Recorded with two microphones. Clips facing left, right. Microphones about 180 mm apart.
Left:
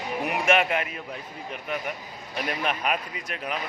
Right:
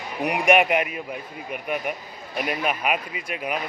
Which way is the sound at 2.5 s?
10° right (ahead or behind).